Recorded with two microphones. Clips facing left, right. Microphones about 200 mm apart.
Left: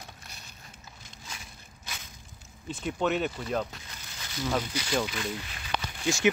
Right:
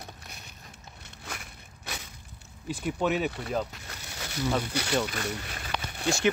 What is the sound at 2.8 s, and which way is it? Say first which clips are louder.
Speech: even; 5° right (ahead or behind).